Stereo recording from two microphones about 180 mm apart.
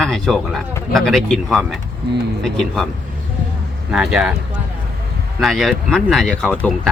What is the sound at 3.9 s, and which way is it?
Speech, 5° right (ahead or behind).